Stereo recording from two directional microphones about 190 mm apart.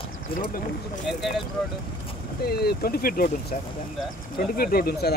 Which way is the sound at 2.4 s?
55° left (ahead or behind).